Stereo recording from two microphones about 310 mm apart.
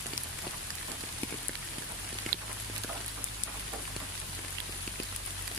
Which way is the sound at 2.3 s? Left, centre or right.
Right.